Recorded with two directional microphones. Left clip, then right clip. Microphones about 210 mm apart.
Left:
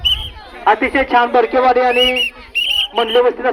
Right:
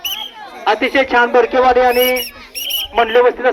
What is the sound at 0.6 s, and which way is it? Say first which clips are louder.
Speech: even; 30° left (ahead or behind).